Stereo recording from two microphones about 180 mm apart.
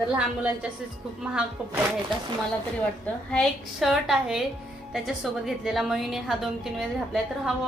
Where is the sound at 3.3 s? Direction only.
Centre (ahead or behind).